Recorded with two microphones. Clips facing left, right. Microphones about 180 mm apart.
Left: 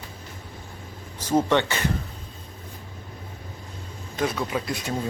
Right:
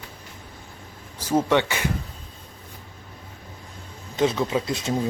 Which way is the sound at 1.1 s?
10° right (ahead or behind).